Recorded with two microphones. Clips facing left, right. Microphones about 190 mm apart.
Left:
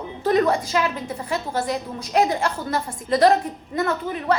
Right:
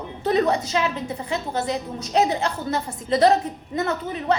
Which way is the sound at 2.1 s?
20° right (ahead or behind).